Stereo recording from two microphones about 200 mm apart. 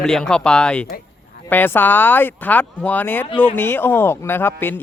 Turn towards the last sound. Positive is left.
turn(degrees=10)  # may be behind; listen again after turning